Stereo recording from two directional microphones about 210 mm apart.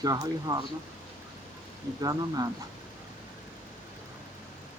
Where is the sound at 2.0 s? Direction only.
15° right (ahead or behind).